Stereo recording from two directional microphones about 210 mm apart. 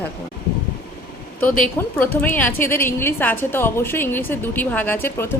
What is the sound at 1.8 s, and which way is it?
A woman's voice, 10° left (ahead or behind).